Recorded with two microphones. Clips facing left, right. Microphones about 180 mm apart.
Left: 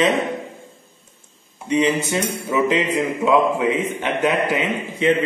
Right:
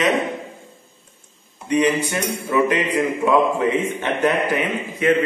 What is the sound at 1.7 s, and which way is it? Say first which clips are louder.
A man's voice: even; 20° left (ahead or behind).